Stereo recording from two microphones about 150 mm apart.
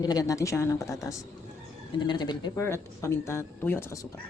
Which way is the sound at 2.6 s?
15° left (ahead or behind).